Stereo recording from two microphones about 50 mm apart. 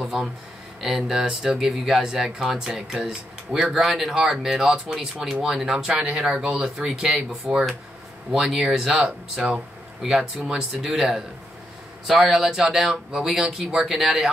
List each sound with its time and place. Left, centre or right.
0.0 s a sound: centre
0.7 s speech: centre
7.5 s speech: centre
8.5 s speech: centre
8.8 s speech: centre
10.7 s speech: centre